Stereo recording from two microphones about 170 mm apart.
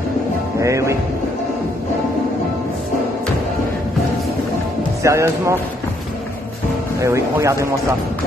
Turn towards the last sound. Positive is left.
turn(degrees=-15)  # may be behind; listen again after turning